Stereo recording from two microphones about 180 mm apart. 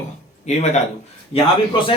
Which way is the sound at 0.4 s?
40° left (ahead or behind).